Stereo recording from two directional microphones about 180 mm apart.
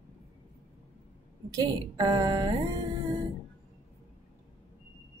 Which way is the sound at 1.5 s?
20° right (ahead or behind).